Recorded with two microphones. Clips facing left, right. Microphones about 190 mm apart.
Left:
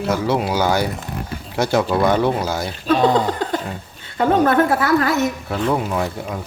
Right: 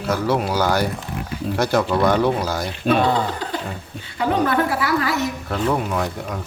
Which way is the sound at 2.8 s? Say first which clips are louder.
Even; 60° right (ahead or behind).